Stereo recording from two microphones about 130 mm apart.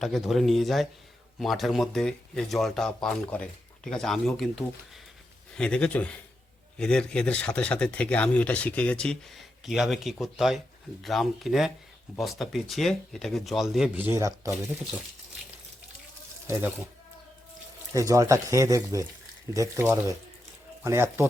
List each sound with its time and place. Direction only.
0.0 s speech: centre (ahead or behind)
14.2 s speech: 25° right (ahead or behind)
16.5 s speech: 15° right (ahead or behind)
17.9 s speech: 25° right (ahead or behind)